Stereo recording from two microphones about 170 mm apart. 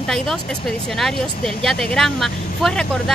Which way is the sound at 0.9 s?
Centre (ahead or behind).